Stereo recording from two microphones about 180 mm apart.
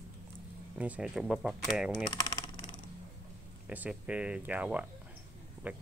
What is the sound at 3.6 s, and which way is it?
Speech, 10° right (ahead or behind).